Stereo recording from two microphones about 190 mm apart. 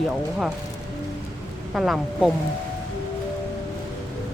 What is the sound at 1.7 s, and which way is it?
Speech, centre (ahead or behind).